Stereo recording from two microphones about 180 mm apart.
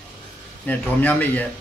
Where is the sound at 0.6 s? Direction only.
10° left (ahead or behind).